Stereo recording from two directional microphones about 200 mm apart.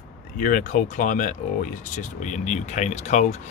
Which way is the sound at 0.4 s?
40° left (ahead or behind).